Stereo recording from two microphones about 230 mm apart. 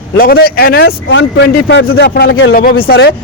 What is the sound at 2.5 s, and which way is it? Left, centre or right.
Speech, left.